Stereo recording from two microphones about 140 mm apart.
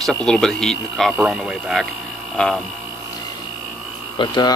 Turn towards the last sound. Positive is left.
turn(degrees=30)  # may be behind; listen again after turning